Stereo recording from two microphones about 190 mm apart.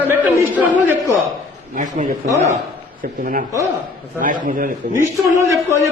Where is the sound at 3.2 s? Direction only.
45° right (ahead or behind).